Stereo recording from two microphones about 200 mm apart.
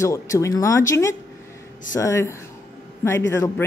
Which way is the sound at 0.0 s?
15° left (ahead or behind).